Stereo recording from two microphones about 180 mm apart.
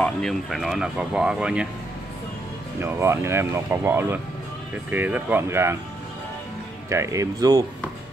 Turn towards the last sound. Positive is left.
turn(degrees=-20)  # may be behind; listen again after turning